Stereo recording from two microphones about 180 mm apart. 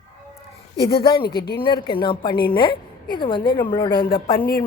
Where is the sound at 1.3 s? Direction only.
60° left (ahead or behind).